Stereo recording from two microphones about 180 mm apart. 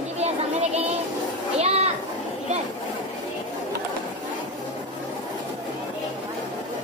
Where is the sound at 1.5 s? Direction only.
35° right (ahead or behind).